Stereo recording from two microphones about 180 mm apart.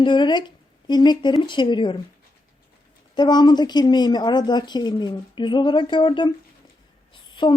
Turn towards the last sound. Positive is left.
turn(degrees=25)  # may be behind; listen again after turning